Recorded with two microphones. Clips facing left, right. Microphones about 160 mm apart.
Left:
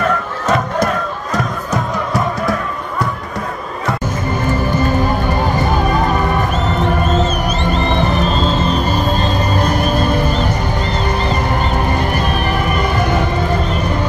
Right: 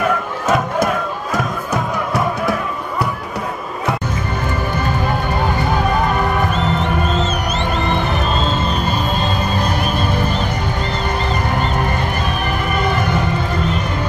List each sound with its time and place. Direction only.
0.0 s music: 5° right (ahead or behind)